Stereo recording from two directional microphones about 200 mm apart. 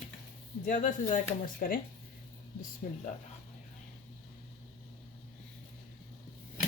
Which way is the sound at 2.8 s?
40° left (ahead or behind).